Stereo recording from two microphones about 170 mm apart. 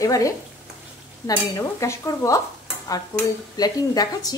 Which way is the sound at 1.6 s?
20° left (ahead or behind).